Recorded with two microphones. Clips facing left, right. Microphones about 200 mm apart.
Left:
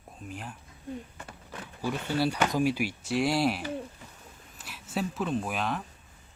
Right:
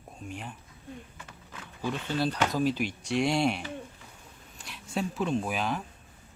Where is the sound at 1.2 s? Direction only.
40° left (ahead or behind).